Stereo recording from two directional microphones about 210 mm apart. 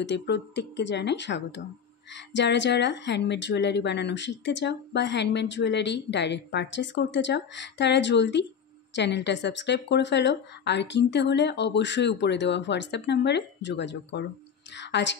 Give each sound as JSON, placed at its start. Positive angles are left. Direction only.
{"t": 0.0, "sound": "a woman's voice", "side_deg": 55}